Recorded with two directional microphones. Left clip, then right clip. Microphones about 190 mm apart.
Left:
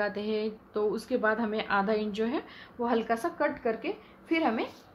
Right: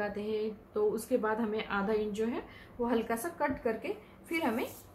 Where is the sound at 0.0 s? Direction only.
45° left (ahead or behind).